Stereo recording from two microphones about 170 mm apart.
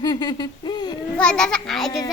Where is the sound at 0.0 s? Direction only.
25° left (ahead or behind).